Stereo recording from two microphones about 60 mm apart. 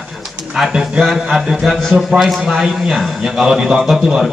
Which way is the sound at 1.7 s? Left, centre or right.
Centre.